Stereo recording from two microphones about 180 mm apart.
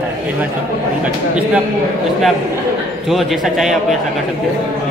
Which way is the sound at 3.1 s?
Centre (ahead or behind).